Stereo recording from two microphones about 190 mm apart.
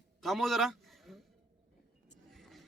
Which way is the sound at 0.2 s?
Centre (ahead or behind).